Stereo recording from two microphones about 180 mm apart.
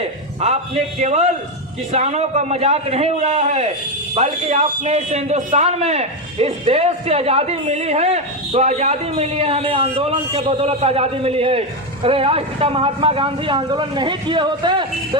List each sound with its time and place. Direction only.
0.0 s a man's voice: 35° right (ahead or behind)